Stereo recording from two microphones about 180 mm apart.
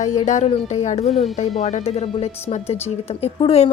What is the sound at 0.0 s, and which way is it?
A woman's voice, 40° left (ahead or behind).